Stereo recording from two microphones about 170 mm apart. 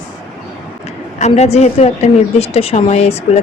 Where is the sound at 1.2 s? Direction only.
40° left (ahead or behind).